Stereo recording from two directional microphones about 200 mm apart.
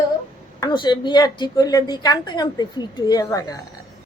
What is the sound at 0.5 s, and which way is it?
A woman's voice, 20° left (ahead or behind).